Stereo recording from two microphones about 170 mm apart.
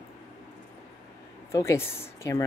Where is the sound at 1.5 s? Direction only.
15° left (ahead or behind).